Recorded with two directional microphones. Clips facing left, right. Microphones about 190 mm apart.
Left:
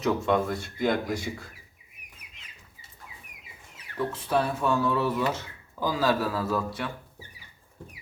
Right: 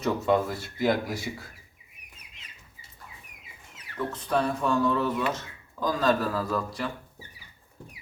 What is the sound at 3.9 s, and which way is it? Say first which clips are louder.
Speech: left 1 dB; 5° left (ahead or behind).